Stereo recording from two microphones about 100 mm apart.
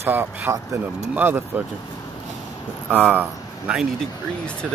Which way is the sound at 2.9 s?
15° right (ahead or behind).